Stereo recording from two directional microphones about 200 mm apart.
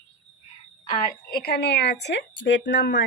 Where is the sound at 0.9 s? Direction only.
50° left (ahead or behind).